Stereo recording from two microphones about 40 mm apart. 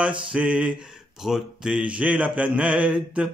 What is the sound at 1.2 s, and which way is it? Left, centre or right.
Speech, centre.